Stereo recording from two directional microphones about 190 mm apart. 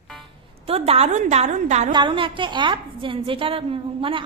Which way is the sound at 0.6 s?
30° right (ahead or behind).